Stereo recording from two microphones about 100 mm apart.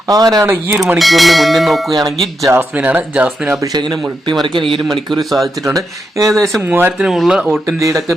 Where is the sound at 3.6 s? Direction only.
45° right (ahead or behind).